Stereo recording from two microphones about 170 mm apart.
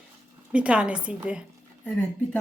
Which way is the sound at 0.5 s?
5° right (ahead or behind).